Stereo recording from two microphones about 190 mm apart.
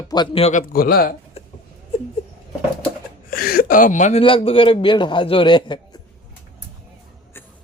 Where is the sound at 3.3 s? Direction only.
50° left (ahead or behind); by 6.0 s 25° left (ahead or behind).